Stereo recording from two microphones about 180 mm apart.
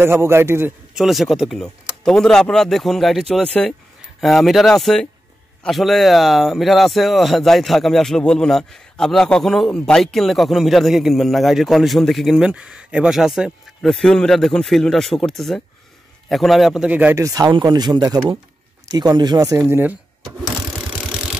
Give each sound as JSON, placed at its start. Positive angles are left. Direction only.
{"t": 0.0, "sound": "a man's voice", "side_deg": -15}
{"t": 0.9, "sound": "a man's voice", "side_deg": 0}
{"t": 20.7, "sound": "vehicle", "side_deg": -5}